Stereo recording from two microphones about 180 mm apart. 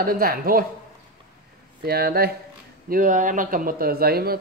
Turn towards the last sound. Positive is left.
turn(degrees=-60)  # may be behind; listen again after turning